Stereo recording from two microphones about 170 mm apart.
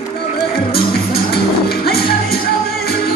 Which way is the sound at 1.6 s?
65° left (ahead or behind).